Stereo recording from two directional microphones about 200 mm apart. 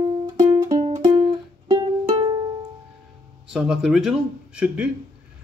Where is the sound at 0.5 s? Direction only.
20° right (ahead or behind).